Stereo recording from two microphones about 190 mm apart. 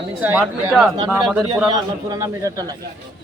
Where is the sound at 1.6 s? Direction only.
20° right (ahead or behind).